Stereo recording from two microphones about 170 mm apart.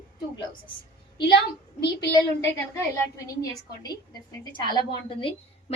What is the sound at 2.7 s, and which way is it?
A woman's voice, 20° left (ahead or behind).